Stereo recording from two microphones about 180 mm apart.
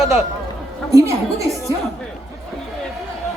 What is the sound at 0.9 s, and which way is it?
Speech, 20° right (ahead or behind).